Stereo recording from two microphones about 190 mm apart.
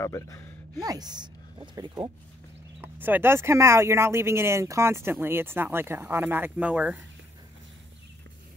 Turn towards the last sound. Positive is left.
turn(degrees=-5)  # may be behind; listen again after turning